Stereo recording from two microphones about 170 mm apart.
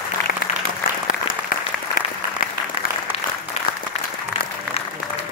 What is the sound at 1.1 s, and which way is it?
Applause, 60° left (ahead or behind).